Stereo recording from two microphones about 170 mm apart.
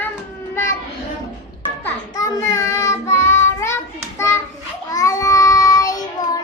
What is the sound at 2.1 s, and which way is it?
Child singing, 20° left (ahead or behind).